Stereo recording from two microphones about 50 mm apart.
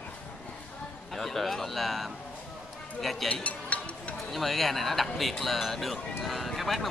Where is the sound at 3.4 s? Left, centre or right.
Left.